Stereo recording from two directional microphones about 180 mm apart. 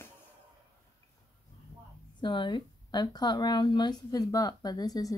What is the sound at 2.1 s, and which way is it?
Speech, 25° left (ahead or behind).